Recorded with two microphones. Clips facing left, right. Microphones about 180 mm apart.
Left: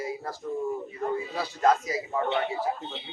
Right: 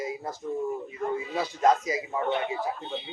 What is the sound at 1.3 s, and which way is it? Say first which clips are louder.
Speech: right 1 dB; 20° right (ahead or behind).